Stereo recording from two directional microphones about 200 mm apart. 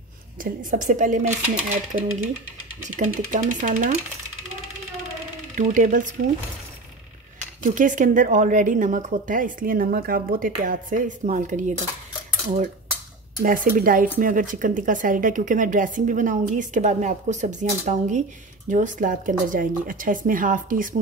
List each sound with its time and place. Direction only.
0.4 s speech: 40° right (ahead or behind)
5.6 s speech: 40° right (ahead or behind)
7.6 s speech: 40° right (ahead or behind)
13.4 s speech: 40° right (ahead or behind)